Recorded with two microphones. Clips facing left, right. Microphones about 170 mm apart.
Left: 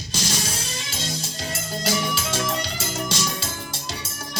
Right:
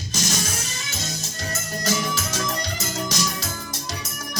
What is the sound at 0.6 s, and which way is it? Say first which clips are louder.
Music: left 1 dB; 30° left (ahead or behind).